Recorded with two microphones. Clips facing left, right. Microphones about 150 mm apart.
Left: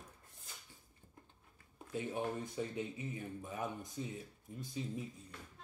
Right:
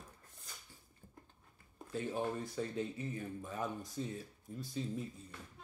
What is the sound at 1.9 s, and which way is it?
Speech, 20° left (ahead or behind).